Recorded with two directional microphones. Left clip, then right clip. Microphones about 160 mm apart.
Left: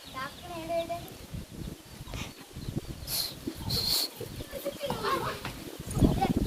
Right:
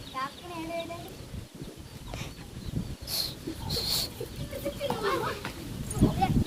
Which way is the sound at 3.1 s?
30° left (ahead or behind).